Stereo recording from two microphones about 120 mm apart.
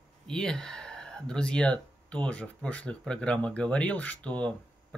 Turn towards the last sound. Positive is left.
turn(degrees=10)  # may be behind; listen again after turning